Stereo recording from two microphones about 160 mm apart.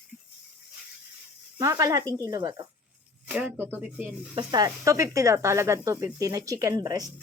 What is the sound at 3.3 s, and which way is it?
Speech, 10° right (ahead or behind).